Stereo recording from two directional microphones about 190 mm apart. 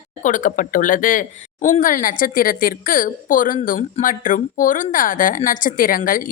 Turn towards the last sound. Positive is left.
turn(degrees=45)  # may be behind; listen again after turning